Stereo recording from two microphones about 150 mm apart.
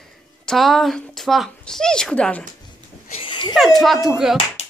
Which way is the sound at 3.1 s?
35° left (ahead or behind).